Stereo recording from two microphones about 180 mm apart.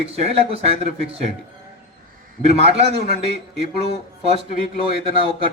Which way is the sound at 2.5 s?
35° right (ahead or behind).